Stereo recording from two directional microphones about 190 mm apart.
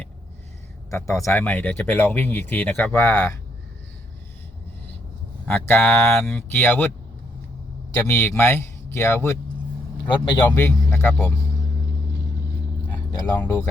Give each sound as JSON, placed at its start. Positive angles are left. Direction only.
{"t": 0.9, "sound": "speech", "side_deg": 15}
{"t": 5.5, "sound": "speech", "side_deg": 10}
{"t": 7.9, "sound": "speech", "side_deg": 10}
{"t": 10.5, "sound": "speech", "side_deg": 10}
{"t": 13.1, "sound": "speech", "side_deg": 20}
{"t": 13.4, "sound": "speech", "side_deg": 10}